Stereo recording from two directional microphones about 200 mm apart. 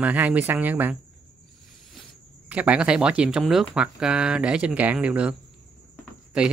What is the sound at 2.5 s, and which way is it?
Speech, 5° right (ahead or behind).